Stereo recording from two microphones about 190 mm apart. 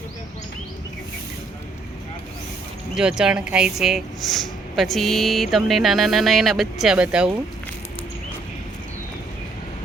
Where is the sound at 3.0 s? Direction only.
5° right (ahead or behind).